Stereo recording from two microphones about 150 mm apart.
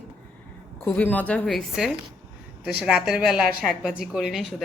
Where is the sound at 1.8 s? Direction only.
5° right (ahead or behind).